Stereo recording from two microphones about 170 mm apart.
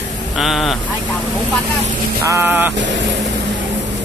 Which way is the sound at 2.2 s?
15° right (ahead or behind).